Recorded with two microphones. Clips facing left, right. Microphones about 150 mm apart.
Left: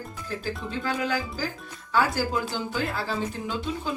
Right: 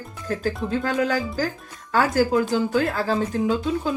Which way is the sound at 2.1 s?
45° right (ahead or behind).